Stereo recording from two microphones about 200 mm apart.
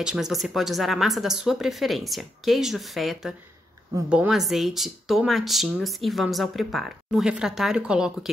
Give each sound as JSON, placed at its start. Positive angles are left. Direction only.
{"t": 0.0, "sound": "speech", "side_deg": 0}